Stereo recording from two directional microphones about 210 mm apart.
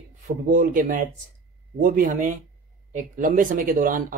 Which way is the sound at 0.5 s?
40° right (ahead or behind).